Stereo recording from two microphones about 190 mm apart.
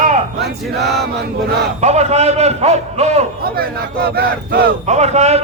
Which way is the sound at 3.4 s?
55° right (ahead or behind).